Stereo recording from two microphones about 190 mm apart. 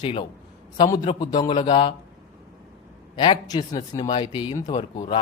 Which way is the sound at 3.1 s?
25° left (ahead or behind).